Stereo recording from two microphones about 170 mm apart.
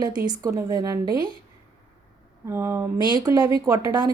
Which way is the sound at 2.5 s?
15° right (ahead or behind).